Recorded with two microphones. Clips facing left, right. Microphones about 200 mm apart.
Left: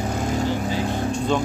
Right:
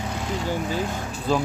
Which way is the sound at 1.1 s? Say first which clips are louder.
Left 1 dB; 5° right (ahead or behind).